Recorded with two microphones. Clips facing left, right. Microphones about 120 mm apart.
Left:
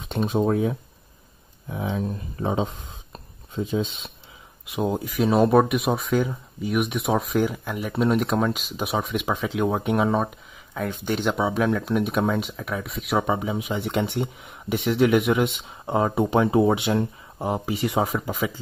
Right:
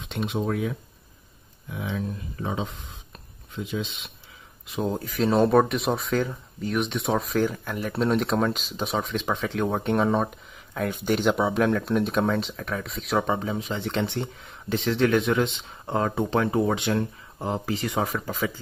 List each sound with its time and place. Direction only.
0.1 s speech: 40° left (ahead or behind)
4.6 s speech: 15° left (ahead or behind)